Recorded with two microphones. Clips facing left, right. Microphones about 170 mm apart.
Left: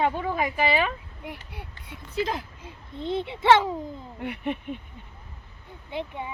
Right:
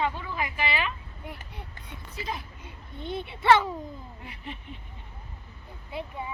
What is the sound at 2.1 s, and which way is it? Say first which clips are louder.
Speech: left 8 dB; 90° left.